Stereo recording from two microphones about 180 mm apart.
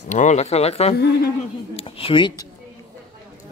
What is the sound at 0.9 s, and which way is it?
Speech, 60° left (ahead or behind).